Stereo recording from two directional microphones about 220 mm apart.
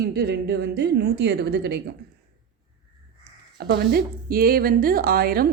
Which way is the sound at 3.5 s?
45° right (ahead or behind).